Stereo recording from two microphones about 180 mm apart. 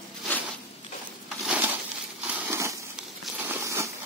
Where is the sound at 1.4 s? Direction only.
10° right (ahead or behind).